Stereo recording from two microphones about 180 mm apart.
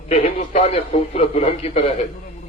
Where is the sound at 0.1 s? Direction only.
35° left (ahead or behind).